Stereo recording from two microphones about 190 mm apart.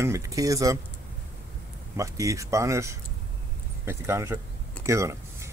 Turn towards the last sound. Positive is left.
turn(degrees=-15)  # may be behind; listen again after turning